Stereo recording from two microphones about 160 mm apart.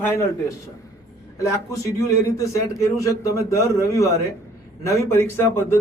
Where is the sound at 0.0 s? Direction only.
20° left (ahead or behind).